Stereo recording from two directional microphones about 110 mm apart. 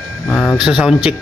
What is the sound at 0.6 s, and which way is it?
Speech, 5° right (ahead or behind).